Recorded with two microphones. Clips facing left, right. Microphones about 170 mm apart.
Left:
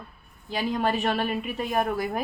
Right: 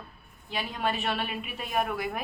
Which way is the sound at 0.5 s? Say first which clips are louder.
Left 5 dB; 40° left (ahead or behind).